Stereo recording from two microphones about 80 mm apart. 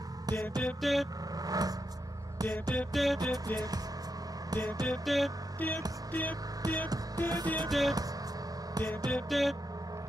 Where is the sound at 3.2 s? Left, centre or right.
Right.